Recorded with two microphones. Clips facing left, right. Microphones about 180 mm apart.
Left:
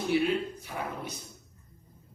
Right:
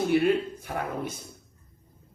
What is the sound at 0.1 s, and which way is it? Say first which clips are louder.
A man's voice: right 1 dB; 50° right (ahead or behind).